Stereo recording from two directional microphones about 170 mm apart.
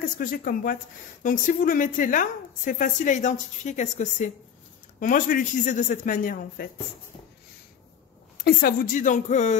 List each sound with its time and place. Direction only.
0.2 s a woman's voice: 55° left (ahead or behind)
8.4 s a woman's voice: 70° left (ahead or behind); by 9.6 s 45° left (ahead or behind)